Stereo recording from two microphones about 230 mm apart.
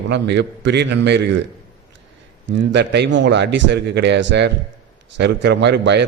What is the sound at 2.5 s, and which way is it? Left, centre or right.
A man's voice, right.